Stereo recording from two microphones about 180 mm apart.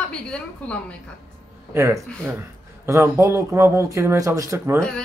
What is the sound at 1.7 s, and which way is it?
Speech, 15° right (ahead or behind).